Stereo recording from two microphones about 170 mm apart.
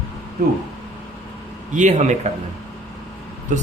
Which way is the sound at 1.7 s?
45° right (ahead or behind).